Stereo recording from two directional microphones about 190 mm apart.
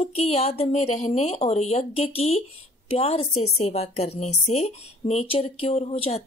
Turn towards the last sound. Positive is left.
turn(degrees=30)  # may be behind; listen again after turning